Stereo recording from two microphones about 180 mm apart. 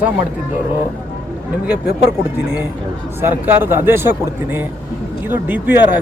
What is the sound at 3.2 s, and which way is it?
Speech, 10° right (ahead or behind).